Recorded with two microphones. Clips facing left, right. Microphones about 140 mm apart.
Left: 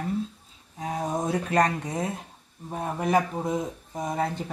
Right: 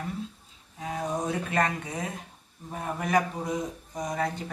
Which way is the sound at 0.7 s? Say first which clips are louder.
Left 2 dB; 35° left (ahead or behind).